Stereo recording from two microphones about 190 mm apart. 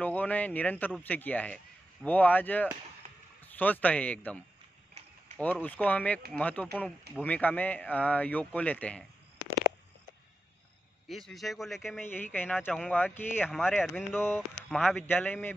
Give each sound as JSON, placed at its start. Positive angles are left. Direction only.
{"t": 0.0, "sound": "speech", "side_deg": 10}
{"t": 3.0, "sound": "a sound", "side_deg": -40}
{"t": 3.5, "sound": "speech", "side_deg": 10}
{"t": 5.4, "sound": "speech", "side_deg": 10}
{"t": 11.1, "sound": "speech", "side_deg": 0}
{"t": 12.0, "sound": "speech", "side_deg": 10}